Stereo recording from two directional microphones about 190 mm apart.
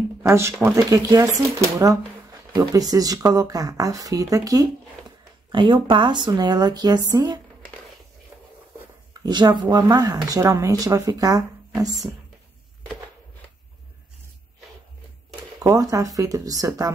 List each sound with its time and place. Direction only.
0.2 s speech: 15° right (ahead or behind)
9.2 s speech: 20° right (ahead or behind)
15.6 s speech: 20° right (ahead or behind)